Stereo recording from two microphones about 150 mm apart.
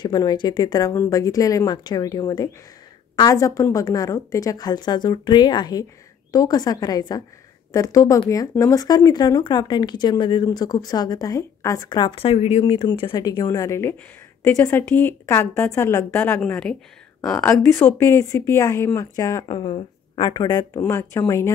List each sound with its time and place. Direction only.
0.0 s a woman's voice: 25° left (ahead or behind)
19.4 s speech: 30° left (ahead or behind)